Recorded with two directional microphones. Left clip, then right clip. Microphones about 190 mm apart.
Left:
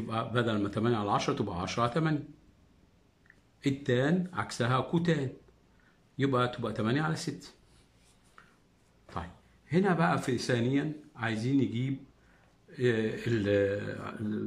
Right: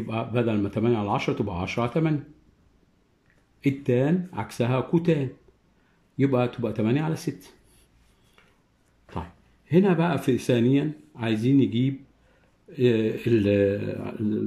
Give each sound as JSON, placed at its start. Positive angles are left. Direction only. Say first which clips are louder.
{"t": 0.1, "sound": "speech", "louder": "right 4 dB", "side_deg": -10}
{"t": 3.6, "sound": "speech", "louder": "right 5 dB", "side_deg": -10}
{"t": 9.7, "sound": "speech", "louder": "right 5 dB", "side_deg": -15}